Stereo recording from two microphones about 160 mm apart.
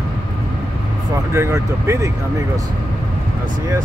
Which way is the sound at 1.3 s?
15° right (ahead or behind).